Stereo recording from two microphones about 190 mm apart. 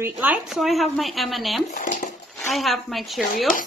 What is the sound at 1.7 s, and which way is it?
Speech, 45° left (ahead or behind).